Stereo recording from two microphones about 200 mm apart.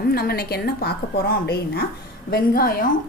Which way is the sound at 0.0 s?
50° left (ahead or behind).